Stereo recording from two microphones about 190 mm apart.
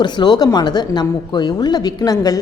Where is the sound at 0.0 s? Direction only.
20° left (ahead or behind).